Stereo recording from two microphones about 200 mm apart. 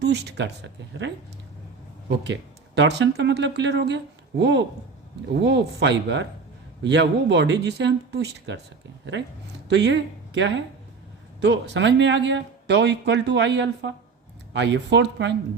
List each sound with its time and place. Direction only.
0.0 s speech: 55° right (ahead or behind)
9.6 s speech: 60° right (ahead or behind)